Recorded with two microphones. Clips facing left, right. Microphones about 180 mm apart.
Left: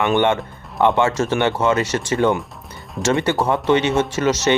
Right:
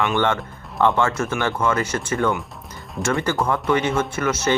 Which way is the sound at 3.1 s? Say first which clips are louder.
Left 3 dB; 20° left (ahead or behind).